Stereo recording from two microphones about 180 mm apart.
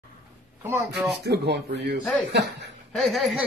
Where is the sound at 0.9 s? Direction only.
Centre (ahead or behind).